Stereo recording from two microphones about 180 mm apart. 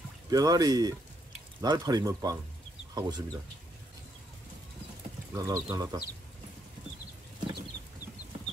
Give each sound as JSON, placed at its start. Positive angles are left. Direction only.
{"t": 0.3, "sound": "speech", "side_deg": -20}
{"t": 5.3, "sound": "speech", "side_deg": -20}